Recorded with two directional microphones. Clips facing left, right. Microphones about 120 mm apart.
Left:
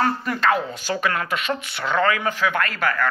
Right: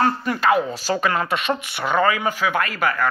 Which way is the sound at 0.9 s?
30° right (ahead or behind).